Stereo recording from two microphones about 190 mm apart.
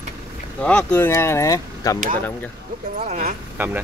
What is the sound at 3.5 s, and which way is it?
Speech, 10° right (ahead or behind).